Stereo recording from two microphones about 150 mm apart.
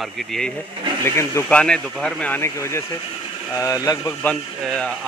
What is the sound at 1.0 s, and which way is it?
Speech, 15° left (ahead or behind).